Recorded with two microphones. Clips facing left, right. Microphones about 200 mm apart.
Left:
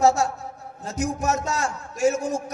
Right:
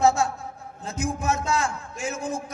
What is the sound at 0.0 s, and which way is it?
A man's voice, 40° left (ahead or behind).